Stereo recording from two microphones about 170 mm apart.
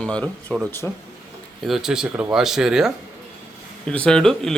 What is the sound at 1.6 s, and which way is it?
Speech, centre (ahead or behind).